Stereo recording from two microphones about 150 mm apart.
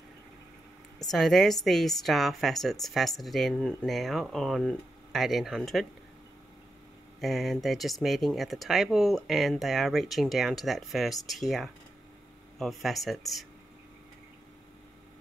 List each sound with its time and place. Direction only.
1.1 s a woman's voice: centre (ahead or behind)
7.2 s a woman's voice: centre (ahead or behind)